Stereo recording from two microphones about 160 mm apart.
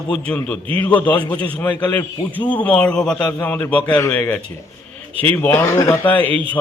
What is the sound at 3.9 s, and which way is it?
Speech, 25° left (ahead or behind).